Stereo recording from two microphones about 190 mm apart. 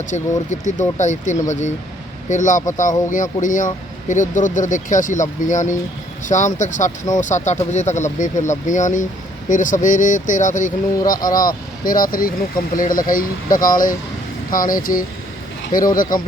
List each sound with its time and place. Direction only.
0.1 s speech: 40° left (ahead or behind)